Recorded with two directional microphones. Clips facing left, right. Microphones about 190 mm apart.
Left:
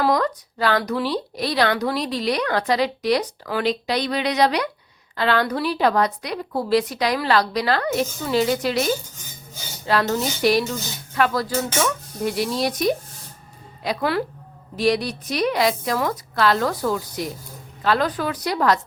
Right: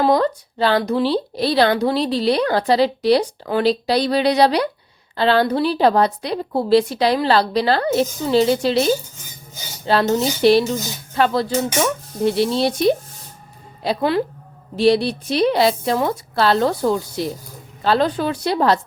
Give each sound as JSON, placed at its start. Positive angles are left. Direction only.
{"t": 0.0, "sound": "a woman's voice", "side_deg": -30}